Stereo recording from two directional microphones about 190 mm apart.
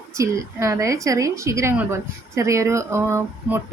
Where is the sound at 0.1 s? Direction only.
15° right (ahead or behind).